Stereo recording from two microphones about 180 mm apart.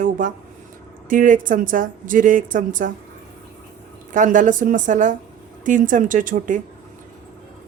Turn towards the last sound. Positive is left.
turn(degrees=-45)  # may be behind; listen again after turning